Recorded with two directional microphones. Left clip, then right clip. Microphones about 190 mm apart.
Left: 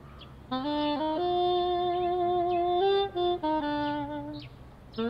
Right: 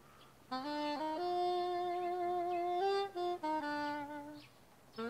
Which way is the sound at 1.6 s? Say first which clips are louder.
Left 9 dB; 15° right (ahead or behind).